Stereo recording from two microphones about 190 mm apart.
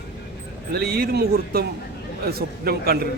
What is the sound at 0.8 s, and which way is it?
A man's voice, 55° right (ahead or behind).